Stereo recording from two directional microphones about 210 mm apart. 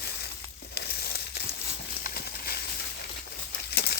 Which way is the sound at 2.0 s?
45° left (ahead or behind).